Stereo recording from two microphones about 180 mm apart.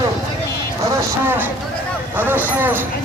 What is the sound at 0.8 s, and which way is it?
Speech, 15° right (ahead or behind).